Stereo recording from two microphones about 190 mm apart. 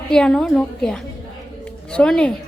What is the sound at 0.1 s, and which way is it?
Speech, centre (ahead or behind).